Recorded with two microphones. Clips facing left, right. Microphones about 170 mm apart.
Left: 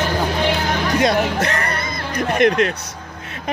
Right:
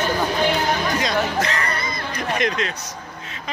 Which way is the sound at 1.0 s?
55° left (ahead or behind).